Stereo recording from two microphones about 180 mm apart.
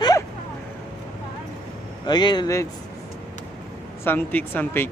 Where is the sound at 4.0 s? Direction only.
10° left (ahead or behind).